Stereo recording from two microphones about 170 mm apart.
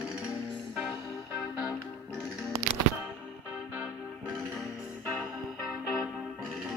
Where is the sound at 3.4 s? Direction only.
10° right (ahead or behind).